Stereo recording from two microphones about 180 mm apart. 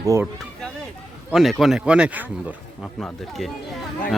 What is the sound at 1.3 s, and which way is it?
A man's voice, centre (ahead or behind).